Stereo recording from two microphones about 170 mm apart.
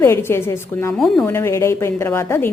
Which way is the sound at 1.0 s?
5° left (ahead or behind).